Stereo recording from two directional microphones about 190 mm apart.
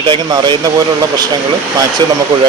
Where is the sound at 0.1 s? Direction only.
25° right (ahead or behind).